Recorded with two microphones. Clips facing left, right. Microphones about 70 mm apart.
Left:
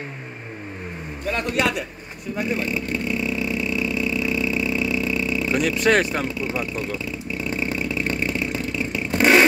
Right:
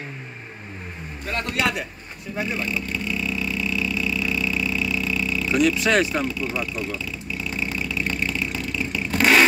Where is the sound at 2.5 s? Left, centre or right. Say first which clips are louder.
Left 2 dB; left.